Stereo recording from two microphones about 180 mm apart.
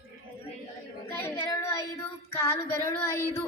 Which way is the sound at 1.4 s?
20° left (ahead or behind).